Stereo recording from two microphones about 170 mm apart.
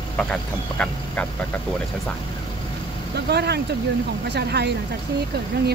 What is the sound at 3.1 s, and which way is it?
Speech, 75° right (ahead or behind).